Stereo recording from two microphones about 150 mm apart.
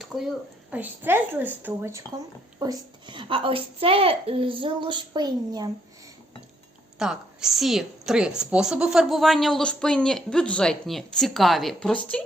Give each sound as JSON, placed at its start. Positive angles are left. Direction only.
{"t": 0.0, "sound": "a sound", "side_deg": 0}
{"t": 0.7, "sound": "speech", "side_deg": -10}
{"t": 3.1, "sound": "a woman's voice", "side_deg": -35}
{"t": 7.0, "sound": "speech", "side_deg": -5}